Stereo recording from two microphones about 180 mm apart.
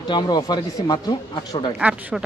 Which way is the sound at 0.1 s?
25° left (ahead or behind).